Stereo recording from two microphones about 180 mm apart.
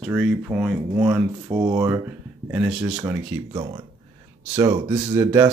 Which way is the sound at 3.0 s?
20° right (ahead or behind).